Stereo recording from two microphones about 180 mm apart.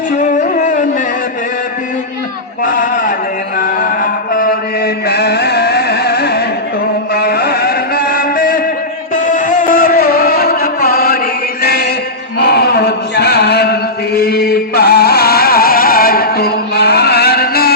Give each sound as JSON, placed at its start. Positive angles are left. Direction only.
{"t": 0.2, "sound": "music", "side_deg": 45}
{"t": 2.6, "sound": "a sound", "side_deg": 50}
{"t": 3.6, "sound": "mantra", "side_deg": 50}
{"t": 9.3, "sound": "music", "side_deg": 45}
{"t": 11.6, "sound": "mantra", "side_deg": 60}
{"t": 12.4, "sound": "chant", "side_deg": 65}
{"t": 14.2, "sound": "music", "side_deg": 60}